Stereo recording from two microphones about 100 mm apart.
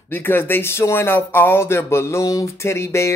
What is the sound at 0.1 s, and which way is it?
Speech, 20° left (ahead or behind).